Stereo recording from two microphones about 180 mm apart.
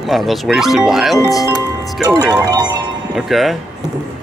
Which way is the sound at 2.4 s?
20° right (ahead or behind).